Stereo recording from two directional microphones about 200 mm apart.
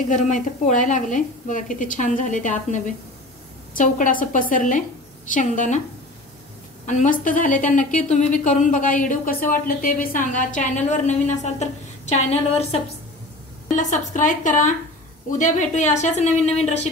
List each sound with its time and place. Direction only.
0.1 s a woman's voice: 40° left (ahead or behind)
6.9 s a woman's voice: 40° left (ahead or behind)